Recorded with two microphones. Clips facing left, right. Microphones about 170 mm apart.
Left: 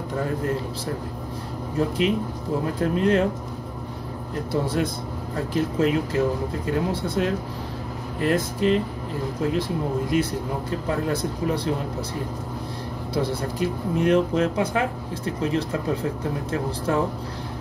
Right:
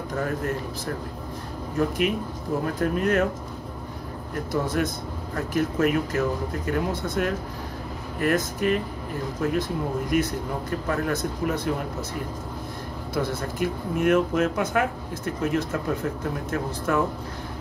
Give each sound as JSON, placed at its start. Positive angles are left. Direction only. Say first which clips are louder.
{"t": 1.8, "sound": "speech", "louder": "left 1 dB", "side_deg": 30}
{"t": 4.5, "sound": "speech", "louder": "left 1 dB", "side_deg": 30}
{"t": 13.1, "sound": "speech", "louder": "left 2 dB", "side_deg": 30}